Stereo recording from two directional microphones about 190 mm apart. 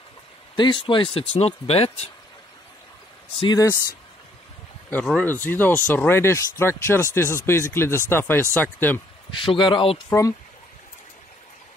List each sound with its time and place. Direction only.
0.6 s speech: 25° left (ahead or behind)
3.3 s speech: 20° left (ahead or behind)
4.9 s speech: 5° left (ahead or behind)
9.3 s speech: 25° left (ahead or behind)